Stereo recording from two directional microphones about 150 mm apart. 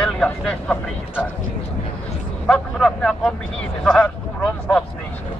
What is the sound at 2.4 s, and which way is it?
A man's voice, 5° left (ahead or behind).